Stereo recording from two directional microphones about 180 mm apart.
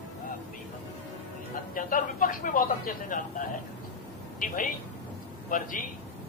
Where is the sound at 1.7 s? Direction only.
50° left (ahead or behind).